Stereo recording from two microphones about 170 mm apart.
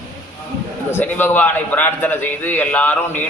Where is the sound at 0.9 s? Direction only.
10° left (ahead or behind).